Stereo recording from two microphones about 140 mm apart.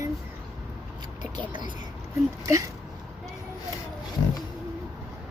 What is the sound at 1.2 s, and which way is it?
Speech, 35° right (ahead or behind).